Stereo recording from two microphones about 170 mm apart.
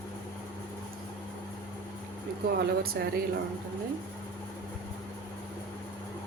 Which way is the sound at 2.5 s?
60° right (ahead or behind).